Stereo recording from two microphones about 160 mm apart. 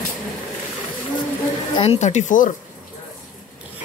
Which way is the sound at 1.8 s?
40° left (ahead or behind).